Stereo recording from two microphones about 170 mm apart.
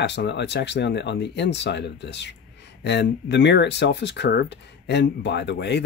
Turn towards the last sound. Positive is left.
turn(degrees=85)